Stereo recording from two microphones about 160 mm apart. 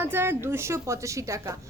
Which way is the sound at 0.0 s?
15° right (ahead or behind).